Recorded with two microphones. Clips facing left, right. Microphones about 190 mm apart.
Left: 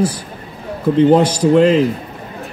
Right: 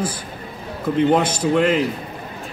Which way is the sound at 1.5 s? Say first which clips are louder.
Left 6 dB; 30° left (ahead or behind).